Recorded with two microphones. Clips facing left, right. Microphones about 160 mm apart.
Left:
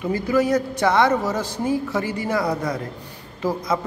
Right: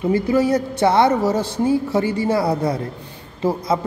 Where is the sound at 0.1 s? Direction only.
30° right (ahead or behind).